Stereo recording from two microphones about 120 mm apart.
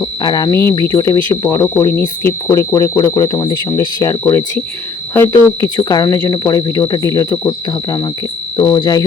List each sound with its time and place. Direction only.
0.0 s speech: 35° left (ahead or behind)